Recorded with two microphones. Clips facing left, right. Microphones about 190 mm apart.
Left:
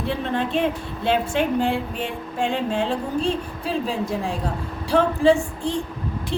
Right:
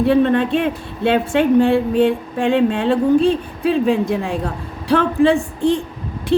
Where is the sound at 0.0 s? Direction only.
65° right (ahead or behind).